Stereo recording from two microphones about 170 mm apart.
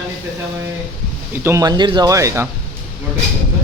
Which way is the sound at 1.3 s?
15° right (ahead or behind).